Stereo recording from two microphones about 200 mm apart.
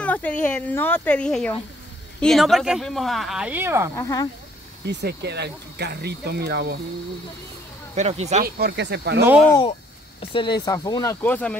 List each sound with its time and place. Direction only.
0.0 s speech: 5° left (ahead or behind); by 3.9 s 10° right (ahead or behind)
3.9 s speech: 15° left (ahead or behind)
4.8 s speech: 55° right (ahead or behind)
7.9 s speech: 35° right (ahead or behind)
8.5 s speech: 55° right (ahead or behind)
9.5 s speech: 25° left (ahead or behind); by 11.5 s 10° left (ahead or behind)